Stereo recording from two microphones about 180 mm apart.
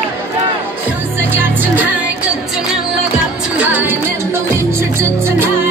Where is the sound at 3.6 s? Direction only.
10° right (ahead or behind).